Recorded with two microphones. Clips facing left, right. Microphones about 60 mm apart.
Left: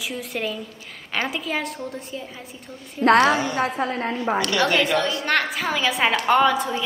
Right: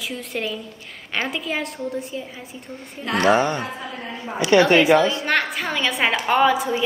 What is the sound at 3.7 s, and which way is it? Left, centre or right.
Speech, left.